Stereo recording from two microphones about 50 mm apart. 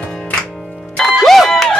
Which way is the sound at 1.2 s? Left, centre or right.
Centre.